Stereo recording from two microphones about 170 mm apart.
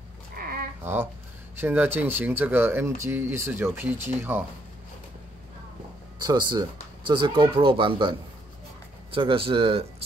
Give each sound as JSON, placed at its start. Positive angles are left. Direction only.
{"t": 0.4, "sound": "a sound", "side_deg": -60}
{"t": 1.6, "sound": "speech", "side_deg": -10}
{"t": 6.1, "sound": "speech", "side_deg": -25}